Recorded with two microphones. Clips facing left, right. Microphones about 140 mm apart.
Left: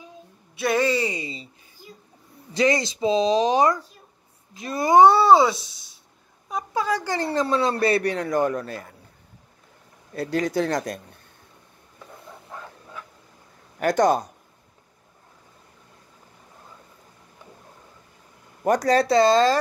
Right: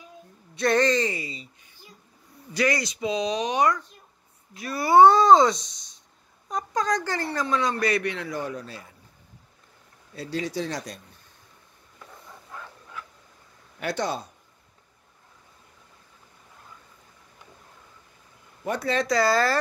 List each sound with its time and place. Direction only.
0.6 s speech: 5° left (ahead or behind)
1.2 s a sound: 30° left (ahead or behind)
2.5 s speech: 25° left (ahead or behind)
7.2 s speech: 30° left (ahead or behind); by 8.9 s 55° left (ahead or behind)
10.1 s speech: 50° left (ahead or behind)
13.7 s speech: 45° left (ahead or behind)
18.6 s speech: 40° left (ahead or behind)
19.1 s speech: 20° left (ahead or behind)